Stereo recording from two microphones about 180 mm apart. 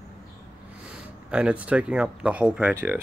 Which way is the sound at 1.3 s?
5° right (ahead or behind).